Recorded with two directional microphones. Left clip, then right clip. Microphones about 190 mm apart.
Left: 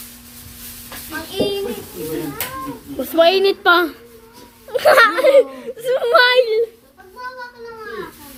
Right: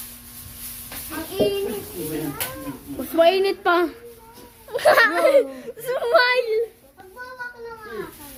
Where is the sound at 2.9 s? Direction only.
5° left (ahead or behind).